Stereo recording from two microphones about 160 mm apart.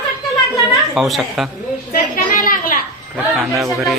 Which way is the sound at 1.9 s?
55° left (ahead or behind).